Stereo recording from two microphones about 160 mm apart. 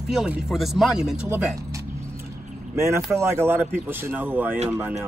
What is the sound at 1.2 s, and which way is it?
A man's voice, 15° right (ahead or behind).